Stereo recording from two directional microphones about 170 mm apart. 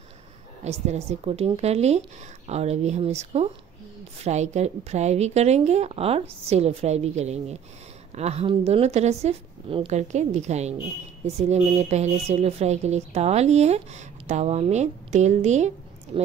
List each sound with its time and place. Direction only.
0.7 s a woman's voice: 40° right (ahead or behind)